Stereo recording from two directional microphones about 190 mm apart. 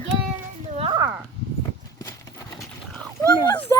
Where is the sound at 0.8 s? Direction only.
25° right (ahead or behind).